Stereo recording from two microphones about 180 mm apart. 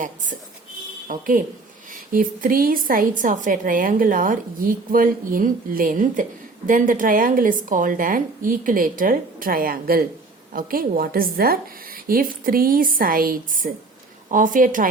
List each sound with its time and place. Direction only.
1.0 s a woman's voice: 45° right (ahead or behind)